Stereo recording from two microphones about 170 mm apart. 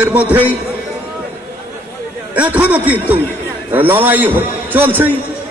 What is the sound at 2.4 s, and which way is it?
A man's voice, 10° right (ahead or behind).